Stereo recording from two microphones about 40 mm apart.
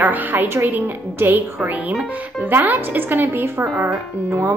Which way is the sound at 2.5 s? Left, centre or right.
Right.